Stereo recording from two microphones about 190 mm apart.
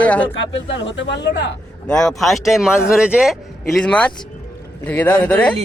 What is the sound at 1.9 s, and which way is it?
A man's voice, 5° left (ahead or behind).